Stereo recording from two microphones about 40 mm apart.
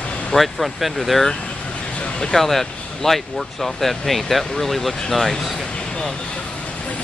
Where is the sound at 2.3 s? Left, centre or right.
Centre.